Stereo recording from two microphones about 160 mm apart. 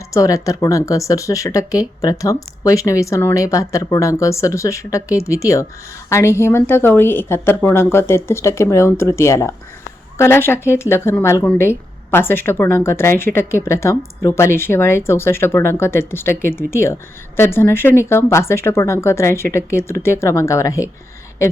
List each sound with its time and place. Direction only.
0.1 s a woman's voice: 20° left (ahead or behind)